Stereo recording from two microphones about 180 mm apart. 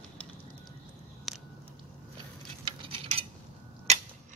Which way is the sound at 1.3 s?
Centre (ahead or behind).